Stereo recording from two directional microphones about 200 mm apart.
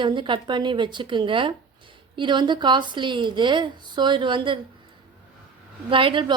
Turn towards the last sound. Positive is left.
turn(degrees=-25)  # may be behind; listen again after turning